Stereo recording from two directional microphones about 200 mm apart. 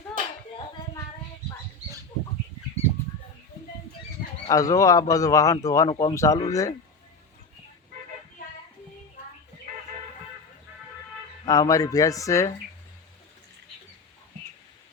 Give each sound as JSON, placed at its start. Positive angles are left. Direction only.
{"t": 4.4, "sound": "speech", "side_deg": 15}
{"t": 11.4, "sound": "speech", "side_deg": 20}